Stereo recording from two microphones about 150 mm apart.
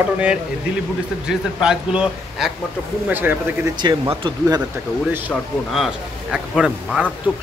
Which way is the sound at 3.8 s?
30° right (ahead or behind).